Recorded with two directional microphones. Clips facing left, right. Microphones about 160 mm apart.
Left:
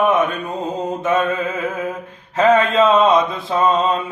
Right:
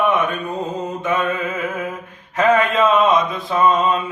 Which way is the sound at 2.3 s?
30° left (ahead or behind).